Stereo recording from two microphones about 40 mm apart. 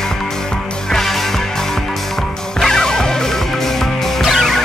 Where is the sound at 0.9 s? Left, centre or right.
Centre.